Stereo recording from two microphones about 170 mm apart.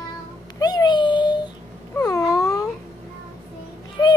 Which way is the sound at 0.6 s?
25° left (ahead or behind).